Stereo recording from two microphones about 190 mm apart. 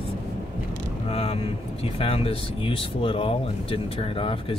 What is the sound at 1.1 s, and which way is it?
Speech, 30° left (ahead or behind).